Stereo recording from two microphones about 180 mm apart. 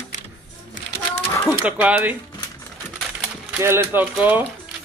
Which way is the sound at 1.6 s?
10° right (ahead or behind).